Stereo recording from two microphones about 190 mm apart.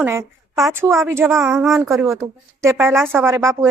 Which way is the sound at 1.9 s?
15° right (ahead or behind).